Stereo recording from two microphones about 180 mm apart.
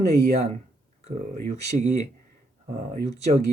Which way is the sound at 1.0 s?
40° right (ahead or behind).